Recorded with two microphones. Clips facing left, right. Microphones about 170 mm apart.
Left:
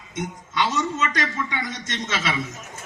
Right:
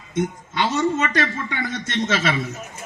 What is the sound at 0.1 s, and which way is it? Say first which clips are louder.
A man's voice: right 6 dB; 55° right (ahead or behind).